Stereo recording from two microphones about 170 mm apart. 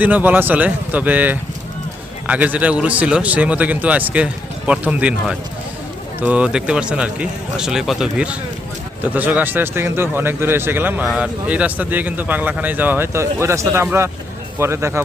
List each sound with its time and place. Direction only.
0.0 s a man's voice: 10° right (ahead or behind)